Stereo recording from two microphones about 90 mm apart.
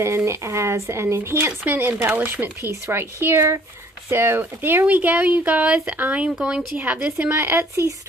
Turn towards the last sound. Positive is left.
turn(degrees=-25)  # may be behind; listen again after turning